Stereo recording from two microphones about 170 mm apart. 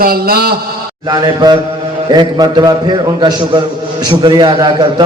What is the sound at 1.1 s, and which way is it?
A man's voice, 25° right (ahead or behind).